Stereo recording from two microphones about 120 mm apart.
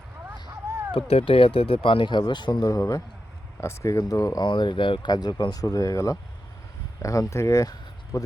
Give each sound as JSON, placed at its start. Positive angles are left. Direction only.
{"t": 0.9, "sound": "speech", "side_deg": 50}